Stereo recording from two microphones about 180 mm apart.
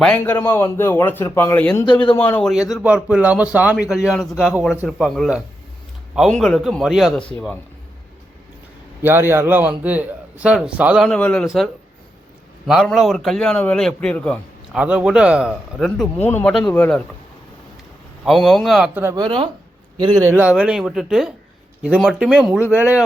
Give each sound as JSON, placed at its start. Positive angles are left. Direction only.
{"t": 0.0, "sound": "a man's voice", "side_deg": 10}
{"t": 1.7, "sound": "a man's voice", "side_deg": 25}
{"t": 2.1, "sound": "a man's voice", "side_deg": 10}
{"t": 2.5, "sound": "a man's voice", "side_deg": 0}
{"t": 9.0, "sound": "a man's voice", "side_deg": -10}
{"t": 14.8, "sound": "a man's voice", "side_deg": -5}
{"t": 18.3, "sound": "a man's voice", "side_deg": 0}